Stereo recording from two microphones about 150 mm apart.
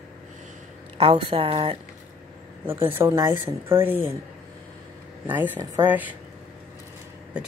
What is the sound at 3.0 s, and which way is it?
Speech, 20° right (ahead or behind).